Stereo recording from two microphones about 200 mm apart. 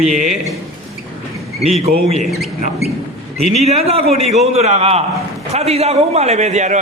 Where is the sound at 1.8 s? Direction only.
30° right (ahead or behind).